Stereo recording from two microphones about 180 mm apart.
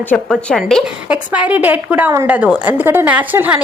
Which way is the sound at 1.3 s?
10° right (ahead or behind).